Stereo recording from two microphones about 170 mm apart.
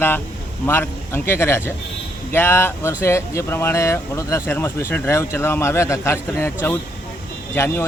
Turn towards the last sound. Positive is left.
turn(degrees=15)  # may be behind; listen again after turning